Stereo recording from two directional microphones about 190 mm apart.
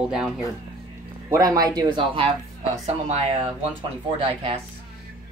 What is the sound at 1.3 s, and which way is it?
A woman's voice, 15° right (ahead or behind).